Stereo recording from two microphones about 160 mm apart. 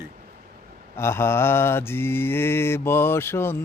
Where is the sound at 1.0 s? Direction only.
15° left (ahead or behind).